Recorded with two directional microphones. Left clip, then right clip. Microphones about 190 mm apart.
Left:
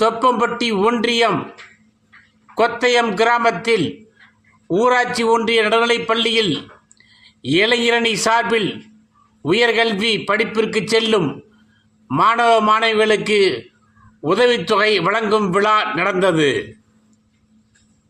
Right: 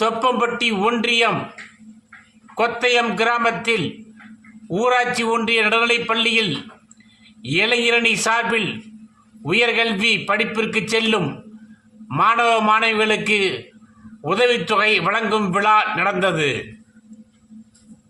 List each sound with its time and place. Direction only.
0.0 s a man's voice: 15° left (ahead or behind)
2.6 s a man's voice: 20° left (ahead or behind)